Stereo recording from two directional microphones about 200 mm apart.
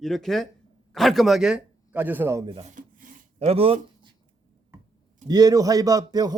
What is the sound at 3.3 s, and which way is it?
Speech, 30° right (ahead or behind).